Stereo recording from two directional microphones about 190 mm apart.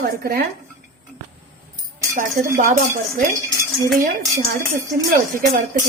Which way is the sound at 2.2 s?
45° right (ahead or behind).